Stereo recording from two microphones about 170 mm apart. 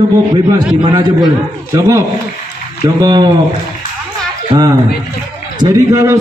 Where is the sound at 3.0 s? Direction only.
25° right (ahead or behind).